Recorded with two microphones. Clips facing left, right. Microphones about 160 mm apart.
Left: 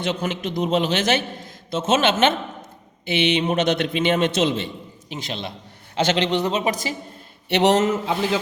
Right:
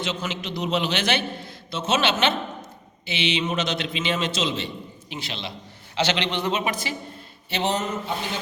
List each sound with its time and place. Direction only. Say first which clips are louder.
0.0 s a man's voice: left 5 dB; 55° left (ahead or behind); by 6.9 s 40° left (ahead or behind)
7.5 s speech: left 8 dB; 80° left